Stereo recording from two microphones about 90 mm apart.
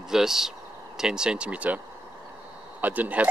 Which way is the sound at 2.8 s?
20° right (ahead or behind).